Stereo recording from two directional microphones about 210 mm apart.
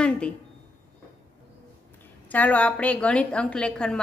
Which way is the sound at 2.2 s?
5° left (ahead or behind).